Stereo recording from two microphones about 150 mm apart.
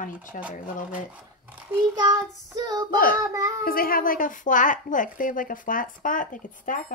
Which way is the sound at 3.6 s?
75° left (ahead or behind).